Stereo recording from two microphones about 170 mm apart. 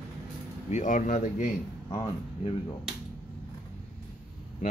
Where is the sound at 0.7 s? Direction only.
45° left (ahead or behind).